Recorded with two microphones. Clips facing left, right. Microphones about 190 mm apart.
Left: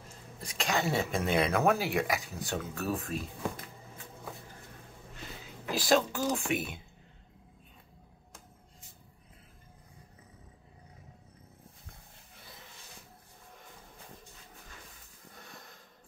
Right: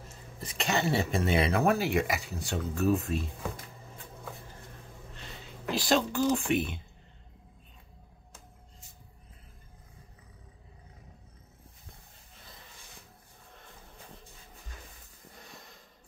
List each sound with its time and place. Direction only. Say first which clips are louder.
0.4 s speech: right 2 dB; centre (ahead or behind)
5.7 s speech: even; centre (ahead or behind)